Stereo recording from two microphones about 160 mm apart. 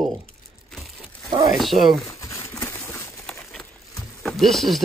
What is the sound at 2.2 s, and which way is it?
Pigeon, 20° left (ahead or behind).